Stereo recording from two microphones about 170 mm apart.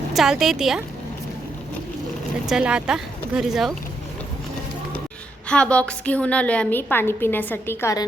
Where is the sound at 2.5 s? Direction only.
5° right (ahead or behind).